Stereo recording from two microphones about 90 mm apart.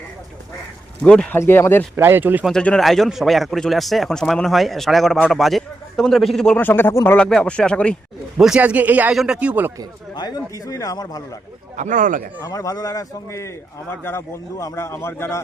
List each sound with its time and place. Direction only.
1.0 s speech: 10° left (ahead or behind)
1.4 s a man's voice: 25° left (ahead or behind)
2.0 s speech: 20° right (ahead or behind)
2.5 s a man's voice: 10° left (ahead or behind)
6.6 s a man's voice: 25° left (ahead or behind)
7.2 s speech: 10° left (ahead or behind)
8.4 s a man's voice: 10° right (ahead or behind)
9.1 s a man's voice: 10° right (ahead or behind)
10.2 s a man's voice: 50° left (ahead or behind)
12.4 s a man's voice: 45° left (ahead or behind)